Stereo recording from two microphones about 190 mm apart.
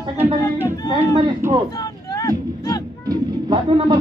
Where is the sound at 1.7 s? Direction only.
20° left (ahead or behind).